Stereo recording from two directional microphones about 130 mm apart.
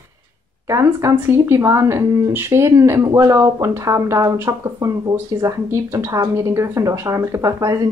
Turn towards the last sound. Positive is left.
turn(degrees=-25)  # may be behind; listen again after turning